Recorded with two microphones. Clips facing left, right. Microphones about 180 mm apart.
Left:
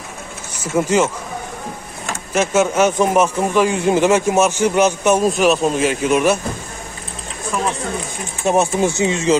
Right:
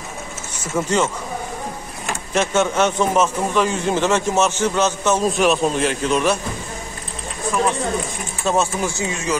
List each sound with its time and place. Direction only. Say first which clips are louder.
0.7 s a man's voice: left 4 dB; 10° left (ahead or behind)
2.3 s a man's voice: left 3 dB; 5° left (ahead or behind)
5.3 s speech: left 2 dB; centre (ahead or behind)
8.5 s speech: left 4 dB; 20° left (ahead or behind)